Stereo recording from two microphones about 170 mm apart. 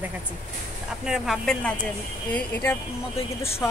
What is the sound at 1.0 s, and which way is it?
A woman's voice, centre (ahead or behind).